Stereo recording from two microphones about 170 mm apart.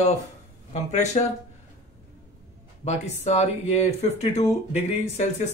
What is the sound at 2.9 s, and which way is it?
Speech, 40° left (ahead or behind).